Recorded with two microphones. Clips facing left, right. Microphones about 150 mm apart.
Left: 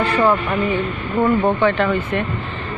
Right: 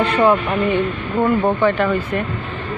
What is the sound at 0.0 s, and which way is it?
Speech, 20° right (ahead or behind).